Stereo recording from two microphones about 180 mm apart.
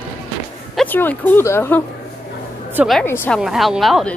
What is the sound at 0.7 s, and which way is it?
Speech, 10° left (ahead or behind).